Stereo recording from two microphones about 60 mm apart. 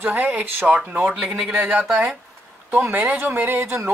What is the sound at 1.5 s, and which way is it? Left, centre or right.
Speech, right.